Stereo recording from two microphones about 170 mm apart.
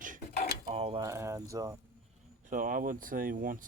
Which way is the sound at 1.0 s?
15° right (ahead or behind).